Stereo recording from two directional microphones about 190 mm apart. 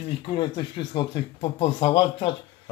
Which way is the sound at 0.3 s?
25° left (ahead or behind).